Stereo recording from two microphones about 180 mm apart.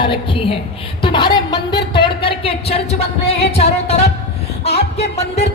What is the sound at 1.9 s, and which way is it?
Music, 30° left (ahead or behind).